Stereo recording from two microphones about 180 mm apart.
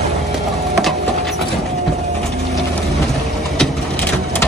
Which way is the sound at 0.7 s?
Centre (ahead or behind).